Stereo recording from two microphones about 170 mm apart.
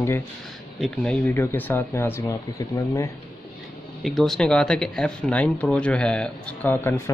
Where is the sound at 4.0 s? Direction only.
Centre (ahead or behind).